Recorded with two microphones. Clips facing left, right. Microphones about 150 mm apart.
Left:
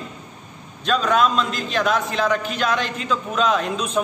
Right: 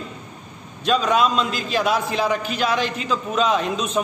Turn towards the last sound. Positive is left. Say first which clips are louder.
# even
turn(degrees=0)  # may be behind; listen again after turning